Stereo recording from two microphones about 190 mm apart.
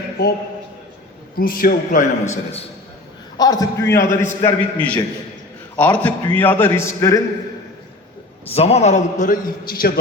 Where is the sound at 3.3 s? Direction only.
20° left (ahead or behind).